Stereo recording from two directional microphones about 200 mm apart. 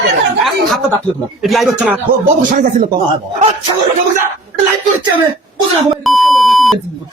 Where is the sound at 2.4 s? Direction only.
45° right (ahead or behind).